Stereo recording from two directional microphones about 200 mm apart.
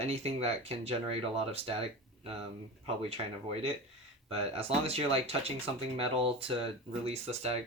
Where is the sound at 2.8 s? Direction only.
30° right (ahead or behind).